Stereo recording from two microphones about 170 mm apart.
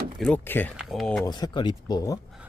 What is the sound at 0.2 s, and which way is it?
Speech, 10° left (ahead or behind).